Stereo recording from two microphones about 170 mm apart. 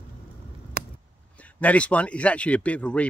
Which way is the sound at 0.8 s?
70° right (ahead or behind).